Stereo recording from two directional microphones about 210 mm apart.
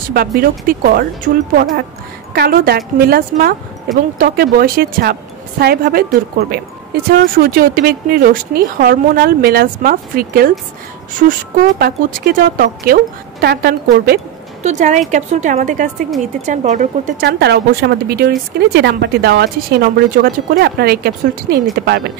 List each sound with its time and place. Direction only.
0.4 s a woman's voice: 40° right (ahead or behind)
7.1 s a woman's voice: 45° right (ahead or behind)
14.6 s speech: 35° right (ahead or behind)
17.3 s a woman's voice: 50° right (ahead or behind)